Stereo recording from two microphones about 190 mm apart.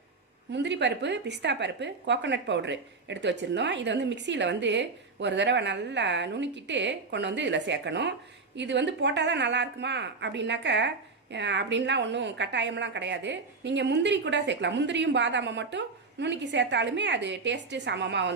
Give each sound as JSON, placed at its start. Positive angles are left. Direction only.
{"t": 0.5, "sound": "a woman's voice", "side_deg": -65}